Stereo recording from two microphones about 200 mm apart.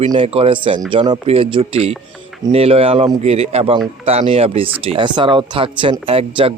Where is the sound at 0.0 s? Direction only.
30° right (ahead or behind).